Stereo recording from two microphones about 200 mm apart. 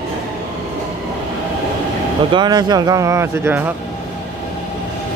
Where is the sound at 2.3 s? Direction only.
20° right (ahead or behind).